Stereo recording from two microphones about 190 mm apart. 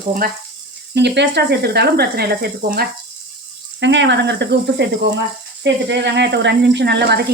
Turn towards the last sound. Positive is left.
turn(degrees=-60)  # may be behind; listen again after turning